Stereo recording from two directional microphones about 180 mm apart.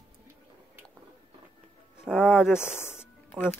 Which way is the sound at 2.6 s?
40° right (ahead or behind).